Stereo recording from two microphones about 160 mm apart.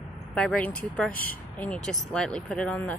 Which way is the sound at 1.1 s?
65° left (ahead or behind).